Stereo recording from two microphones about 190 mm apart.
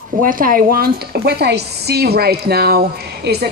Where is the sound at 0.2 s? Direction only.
45° right (ahead or behind).